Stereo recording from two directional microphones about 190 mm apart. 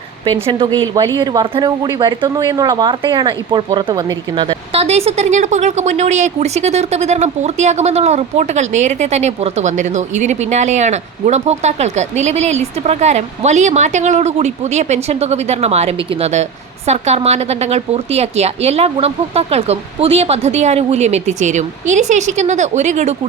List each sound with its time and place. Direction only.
0.4 s speech: 25° right (ahead or behind)